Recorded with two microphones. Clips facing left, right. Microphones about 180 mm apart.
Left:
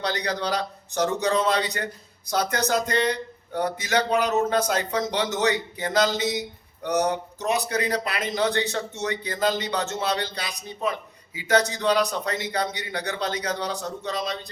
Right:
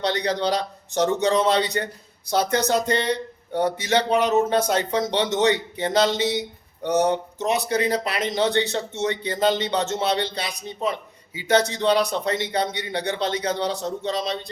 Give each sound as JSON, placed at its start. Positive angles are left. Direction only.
{"t": 0.0, "sound": "speech", "side_deg": -25}